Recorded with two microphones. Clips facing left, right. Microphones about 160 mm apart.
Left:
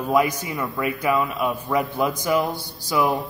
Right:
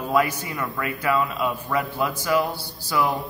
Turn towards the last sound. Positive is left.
turn(degrees=10)  # may be behind; listen again after turning